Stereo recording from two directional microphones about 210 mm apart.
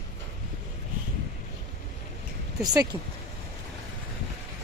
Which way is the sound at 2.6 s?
15° right (ahead or behind).